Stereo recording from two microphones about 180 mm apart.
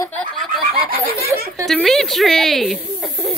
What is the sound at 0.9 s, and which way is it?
Laughter, 55° right (ahead or behind).